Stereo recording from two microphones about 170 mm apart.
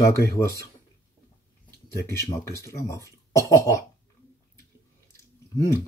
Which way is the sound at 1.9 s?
15° left (ahead or behind).